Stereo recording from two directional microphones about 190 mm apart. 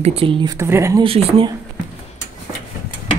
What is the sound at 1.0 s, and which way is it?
Speech, 30° right (ahead or behind).